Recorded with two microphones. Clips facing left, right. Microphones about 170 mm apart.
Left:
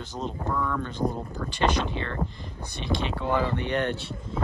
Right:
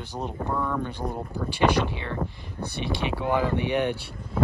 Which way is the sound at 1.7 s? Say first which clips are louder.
Right 3 dB; 60° right (ahead or behind).